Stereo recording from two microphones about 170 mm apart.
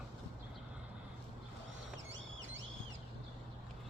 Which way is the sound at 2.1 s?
90° right.